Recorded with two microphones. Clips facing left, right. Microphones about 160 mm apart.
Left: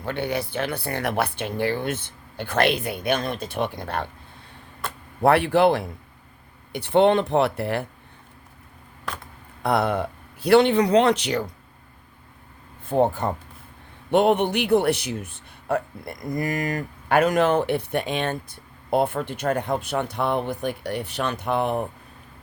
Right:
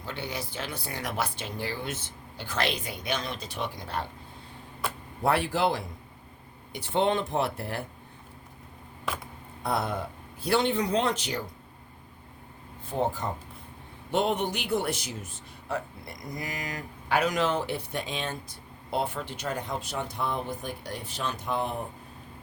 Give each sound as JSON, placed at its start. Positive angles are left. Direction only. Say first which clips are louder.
{"t": 0.0, "sound": "a man's voice", "louder": "left 9 dB", "side_deg": 60}
{"t": 5.2, "sound": "a man's voice", "louder": "left 8 dB", "side_deg": 65}
{"t": 9.1, "sound": "a sound", "louder": "even", "side_deg": -5}
{"t": 9.6, "sound": "speech", "louder": "left 7 dB", "side_deg": 70}
{"t": 12.8, "sound": "a man's voice", "louder": "left 8 dB", "side_deg": 55}